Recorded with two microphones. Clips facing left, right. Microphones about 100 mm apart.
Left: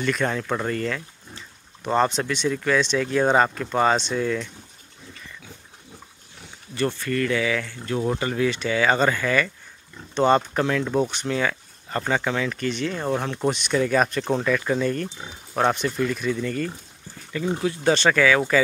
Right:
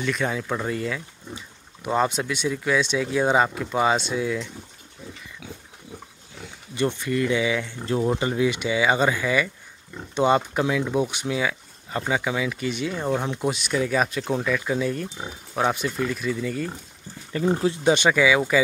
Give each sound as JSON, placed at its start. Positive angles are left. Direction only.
{"t": 0.0, "sound": "speech", "side_deg": -5}
{"t": 6.7, "sound": "speech", "side_deg": -20}
{"t": 17.3, "sound": "speech", "side_deg": -35}